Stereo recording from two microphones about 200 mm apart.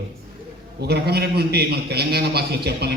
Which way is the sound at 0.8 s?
55° right (ahead or behind).